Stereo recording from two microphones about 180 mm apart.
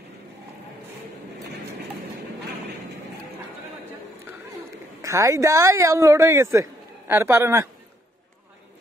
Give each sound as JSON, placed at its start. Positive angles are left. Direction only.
{"t": 5.0, "sound": "speech", "side_deg": -15}